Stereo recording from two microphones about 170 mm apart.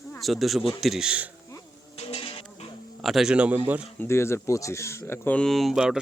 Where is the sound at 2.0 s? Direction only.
35° left (ahead or behind).